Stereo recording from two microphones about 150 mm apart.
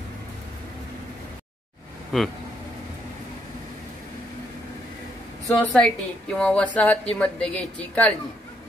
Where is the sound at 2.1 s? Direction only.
Centre (ahead or behind).